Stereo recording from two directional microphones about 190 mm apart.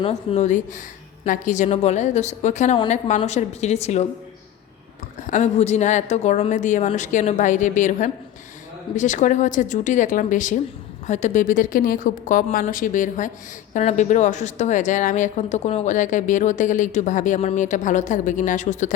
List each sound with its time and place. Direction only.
0.0 s a woman's voice: 35° left (ahead or behind)
5.2 s a woman's voice: 40° left (ahead or behind)